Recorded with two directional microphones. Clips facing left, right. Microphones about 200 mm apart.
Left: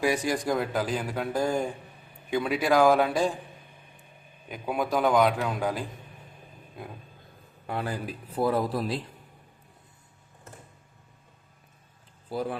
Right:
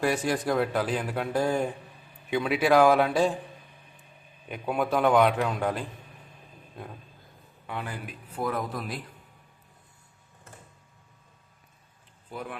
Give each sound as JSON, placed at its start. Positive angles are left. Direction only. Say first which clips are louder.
{"t": 0.0, "sound": "a man's voice", "louder": "even", "side_deg": 0}
{"t": 4.4, "sound": "a man's voice", "louder": "right 1 dB", "side_deg": 0}
{"t": 7.7, "sound": "a man's voice", "louder": "left 4 dB", "side_deg": 40}
{"t": 12.3, "sound": "a man's voice", "louder": "left 7 dB", "side_deg": 35}